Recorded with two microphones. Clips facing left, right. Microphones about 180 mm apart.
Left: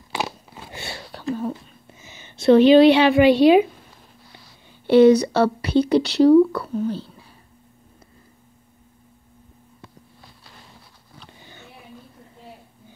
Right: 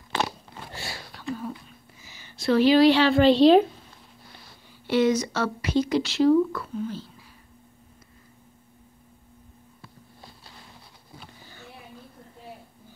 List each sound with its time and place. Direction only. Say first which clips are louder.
0.1 s crunch: even; 10° left (ahead or behind)
0.7 s a sound: left 5 dB; 25° left (ahead or behind); by 3.6 s 10° left (ahead or behind)
4.8 s a woman's voice: left 9 dB; 30° left (ahead or behind)